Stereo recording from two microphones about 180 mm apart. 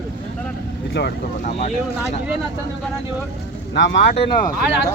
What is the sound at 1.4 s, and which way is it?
Speech, 40° left (ahead or behind).